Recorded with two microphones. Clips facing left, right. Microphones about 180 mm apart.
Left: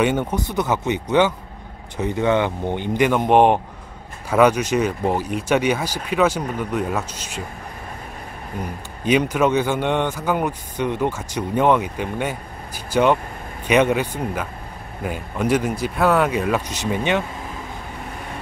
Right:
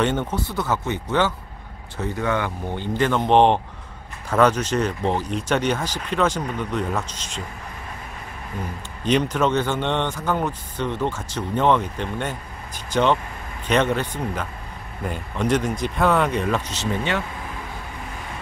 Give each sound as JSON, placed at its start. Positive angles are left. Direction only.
{"t": 0.0, "sound": "speech", "side_deg": 10}
{"t": 9.0, "sound": "speech", "side_deg": 10}